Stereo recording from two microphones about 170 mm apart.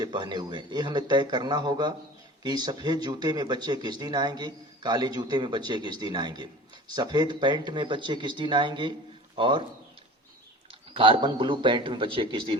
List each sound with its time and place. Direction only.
0.0 s speech: 25° right (ahead or behind)
10.9 s speech: 30° right (ahead or behind)